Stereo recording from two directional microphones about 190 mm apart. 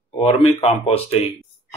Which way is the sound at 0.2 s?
30° left (ahead or behind).